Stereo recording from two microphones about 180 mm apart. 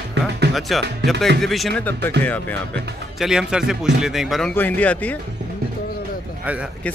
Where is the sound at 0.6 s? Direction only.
Centre (ahead or behind).